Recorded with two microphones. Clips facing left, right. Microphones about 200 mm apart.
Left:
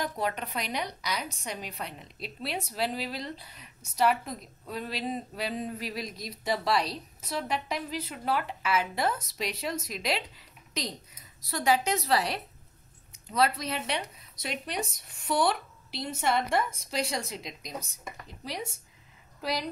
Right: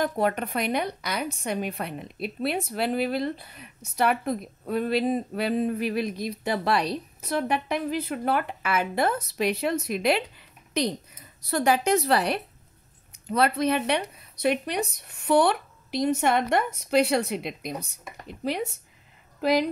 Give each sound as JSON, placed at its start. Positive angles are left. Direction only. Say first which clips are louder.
{"t": 0.0, "sound": "a woman's voice", "louder": "right 7 dB", "side_deg": -55}